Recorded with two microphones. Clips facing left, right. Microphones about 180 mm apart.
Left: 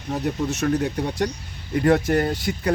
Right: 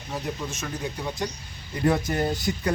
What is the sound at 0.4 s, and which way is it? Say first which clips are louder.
Speech: left 10 dB; 70° left (ahead or behind).